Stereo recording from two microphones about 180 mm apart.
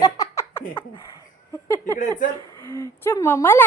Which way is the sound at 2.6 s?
15° left (ahead or behind).